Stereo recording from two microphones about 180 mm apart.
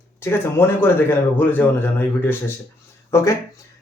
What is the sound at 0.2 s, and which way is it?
Speech, 15° left (ahead or behind).